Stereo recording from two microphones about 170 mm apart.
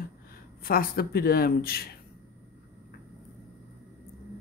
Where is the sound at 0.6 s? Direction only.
60° left (ahead or behind).